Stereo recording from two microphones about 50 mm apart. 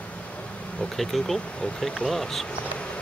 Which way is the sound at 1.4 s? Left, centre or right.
Left.